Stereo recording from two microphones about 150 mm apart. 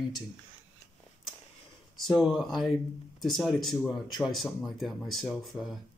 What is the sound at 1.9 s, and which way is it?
Speech, centre (ahead or behind).